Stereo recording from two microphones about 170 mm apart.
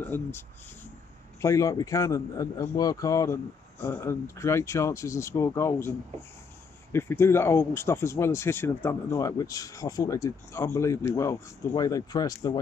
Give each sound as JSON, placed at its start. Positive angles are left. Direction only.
{"t": 0.0, "sound": "speech", "side_deg": 10}
{"t": 1.4, "sound": "a man's voice", "side_deg": 15}